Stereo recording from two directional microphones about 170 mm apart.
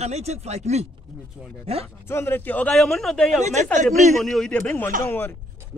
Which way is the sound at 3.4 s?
40° right (ahead or behind).